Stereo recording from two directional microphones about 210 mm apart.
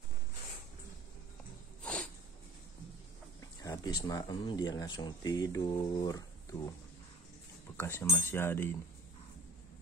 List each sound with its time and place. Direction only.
1.8 s a sound: 5° left (ahead or behind)
3.3 s speech: 15° left (ahead or behind)
7.7 s speech: 10° left (ahead or behind)